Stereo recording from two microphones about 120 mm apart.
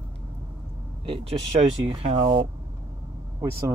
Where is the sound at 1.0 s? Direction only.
50° right (ahead or behind).